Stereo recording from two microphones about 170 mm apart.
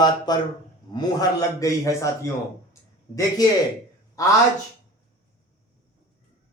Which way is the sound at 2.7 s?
20° left (ahead or behind).